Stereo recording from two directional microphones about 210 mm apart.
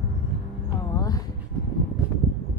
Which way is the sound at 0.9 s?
15° left (ahead or behind).